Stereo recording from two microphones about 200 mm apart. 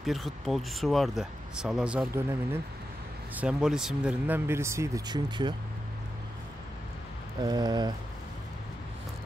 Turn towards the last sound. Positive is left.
turn(degrees=-20)  # may be behind; listen again after turning